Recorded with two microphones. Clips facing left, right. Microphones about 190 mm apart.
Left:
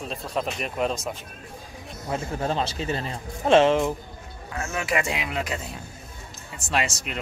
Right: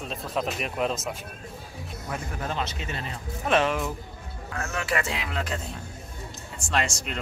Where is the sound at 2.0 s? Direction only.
25° left (ahead or behind).